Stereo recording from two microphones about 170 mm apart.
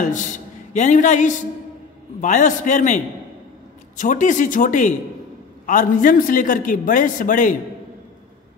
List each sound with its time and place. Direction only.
0.0 s a man's voice: 50° left (ahead or behind)